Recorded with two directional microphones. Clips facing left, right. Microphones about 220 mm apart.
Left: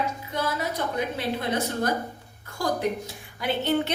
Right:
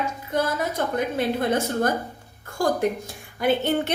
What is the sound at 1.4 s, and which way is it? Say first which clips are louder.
Speech: right 4 dB; 50° right (ahead or behind).